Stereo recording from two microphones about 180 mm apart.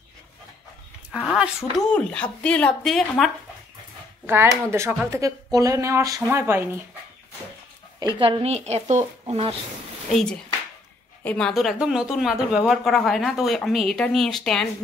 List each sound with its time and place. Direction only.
1.2 s speech: 5° right (ahead or behind)
4.3 s speech: 15° right (ahead or behind)
8.2 s speech: 30° right (ahead or behind)
10.1 s speech: 5° left (ahead or behind)